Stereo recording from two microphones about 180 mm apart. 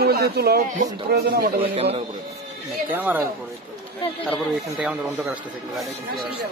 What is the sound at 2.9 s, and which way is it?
Speech, 10° right (ahead or behind).